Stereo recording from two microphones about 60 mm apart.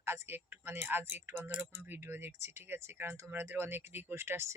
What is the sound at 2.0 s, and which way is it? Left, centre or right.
Speech, right.